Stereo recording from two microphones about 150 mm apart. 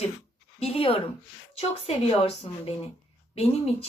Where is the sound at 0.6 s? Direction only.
40° left (ahead or behind).